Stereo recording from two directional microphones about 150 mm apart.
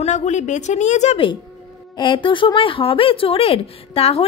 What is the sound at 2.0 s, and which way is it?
A woman's voice, 35° left (ahead or behind).